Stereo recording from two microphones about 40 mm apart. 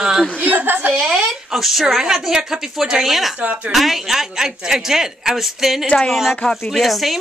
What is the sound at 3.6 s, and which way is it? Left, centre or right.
A woman's voice, centre.